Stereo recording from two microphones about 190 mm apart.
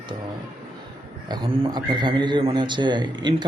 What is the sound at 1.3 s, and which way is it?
Speech, 25° right (ahead or behind).